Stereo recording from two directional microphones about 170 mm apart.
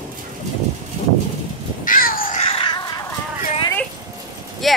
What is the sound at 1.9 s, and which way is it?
Crow, 55° left (ahead or behind).